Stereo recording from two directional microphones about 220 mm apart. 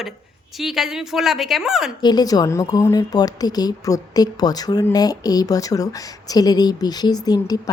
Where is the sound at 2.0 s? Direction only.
20° left (ahead or behind).